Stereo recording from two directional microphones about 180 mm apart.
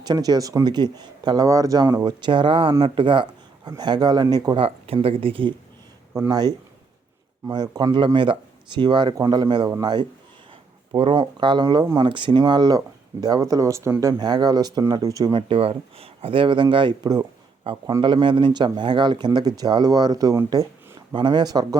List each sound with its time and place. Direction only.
0.0 s speech: 20° right (ahead or behind)
6.1 s speech: 20° right (ahead or behind)